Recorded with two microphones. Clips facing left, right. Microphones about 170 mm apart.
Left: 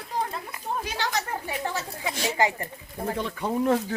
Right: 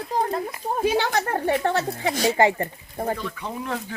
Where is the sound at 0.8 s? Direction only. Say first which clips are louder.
Right 11 dB; 55° right (ahead or behind).